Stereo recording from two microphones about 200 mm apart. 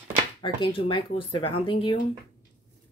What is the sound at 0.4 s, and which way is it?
Speech, 25° left (ahead or behind).